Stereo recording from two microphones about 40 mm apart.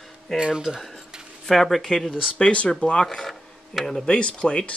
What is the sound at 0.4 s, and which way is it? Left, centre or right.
Speech, centre.